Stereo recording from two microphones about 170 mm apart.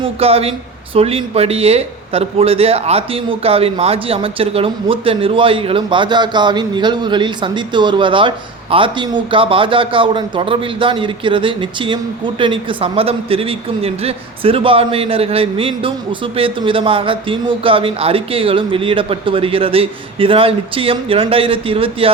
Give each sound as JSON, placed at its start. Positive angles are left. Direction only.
{"t": 0.0, "sound": "a man's voice", "side_deg": -35}